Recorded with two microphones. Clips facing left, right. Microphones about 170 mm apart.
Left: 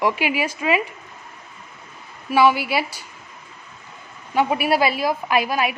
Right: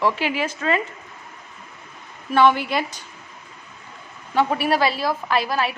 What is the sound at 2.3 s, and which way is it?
Speech, 10° left (ahead or behind).